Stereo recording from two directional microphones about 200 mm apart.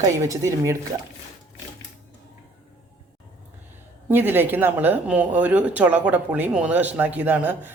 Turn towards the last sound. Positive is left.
turn(degrees=-10)  # may be behind; listen again after turning